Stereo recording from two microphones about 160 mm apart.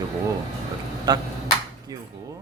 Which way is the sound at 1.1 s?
25° right (ahead or behind).